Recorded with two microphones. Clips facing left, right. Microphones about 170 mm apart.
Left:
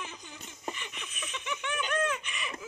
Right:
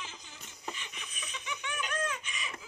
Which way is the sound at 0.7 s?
60° left (ahead or behind).